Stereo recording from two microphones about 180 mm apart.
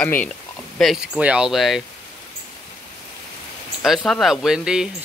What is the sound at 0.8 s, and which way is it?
Speech, centre (ahead or behind).